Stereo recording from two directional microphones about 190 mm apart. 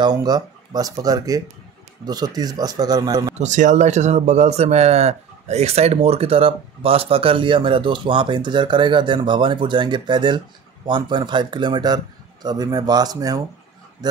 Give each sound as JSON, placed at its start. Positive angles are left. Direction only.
{"t": 0.0, "sound": "speech", "side_deg": -20}
{"t": 3.3, "sound": "speech", "side_deg": -40}